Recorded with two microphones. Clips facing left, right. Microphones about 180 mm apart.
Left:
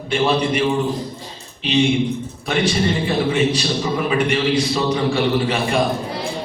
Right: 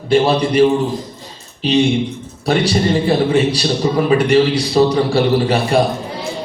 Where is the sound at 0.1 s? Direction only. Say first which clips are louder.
Right 5 dB; 40° right (ahead or behind).